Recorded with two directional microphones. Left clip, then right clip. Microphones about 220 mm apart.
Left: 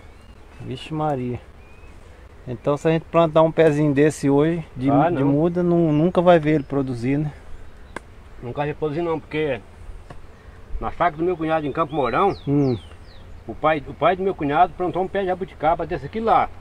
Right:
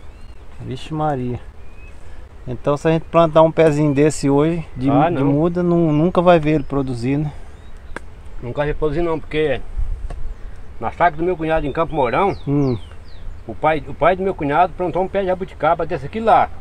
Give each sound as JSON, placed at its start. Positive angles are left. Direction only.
{"t": 0.7, "sound": "speech", "side_deg": -10}
{"t": 2.4, "sound": "speech", "side_deg": -10}
{"t": 4.8, "sound": "speech", "side_deg": -30}
{"t": 5.4, "sound": "speech", "side_deg": -5}
{"t": 8.5, "sound": "speech", "side_deg": -40}
{"t": 10.8, "sound": "speech", "side_deg": -45}
{"t": 12.4, "sound": "speech", "side_deg": 5}
{"t": 13.6, "sound": "speech", "side_deg": -40}